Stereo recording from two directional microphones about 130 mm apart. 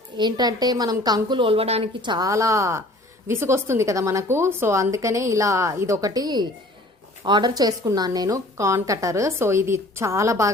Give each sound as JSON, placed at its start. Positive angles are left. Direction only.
{"t": 0.2, "sound": "a woman's voice", "side_deg": -35}
{"t": 2.0, "sound": "a woman's voice", "side_deg": -35}